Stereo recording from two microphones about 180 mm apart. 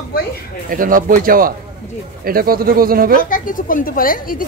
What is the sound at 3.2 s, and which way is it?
A woman's voice, 50° left (ahead or behind).